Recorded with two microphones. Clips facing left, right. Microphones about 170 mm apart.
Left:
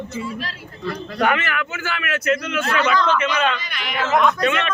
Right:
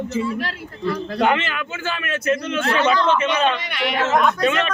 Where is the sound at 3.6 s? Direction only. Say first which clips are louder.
Right 7 dB; 70° right (ahead or behind).